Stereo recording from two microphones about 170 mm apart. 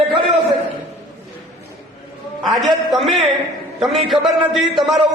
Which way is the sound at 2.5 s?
Centre (ahead or behind).